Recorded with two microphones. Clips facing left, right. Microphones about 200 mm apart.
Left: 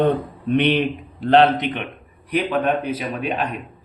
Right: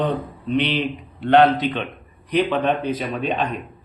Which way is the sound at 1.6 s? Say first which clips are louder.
Right 2 dB; 15° left (ahead or behind).